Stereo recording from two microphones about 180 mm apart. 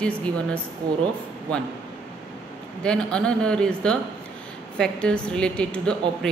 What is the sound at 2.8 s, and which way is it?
Speech, 5° left (ahead or behind).